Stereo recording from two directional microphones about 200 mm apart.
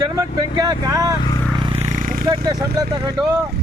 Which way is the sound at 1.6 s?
25° right (ahead or behind).